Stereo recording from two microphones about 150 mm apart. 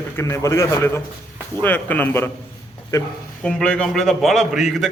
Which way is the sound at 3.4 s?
5° left (ahead or behind).